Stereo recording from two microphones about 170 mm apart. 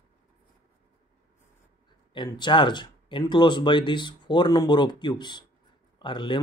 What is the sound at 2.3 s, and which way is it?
Speech, 25° left (ahead or behind).